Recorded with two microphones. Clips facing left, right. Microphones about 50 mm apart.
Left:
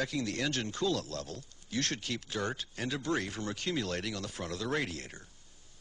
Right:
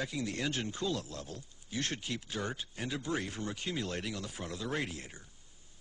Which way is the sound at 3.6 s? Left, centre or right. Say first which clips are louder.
Left 4 dB; left.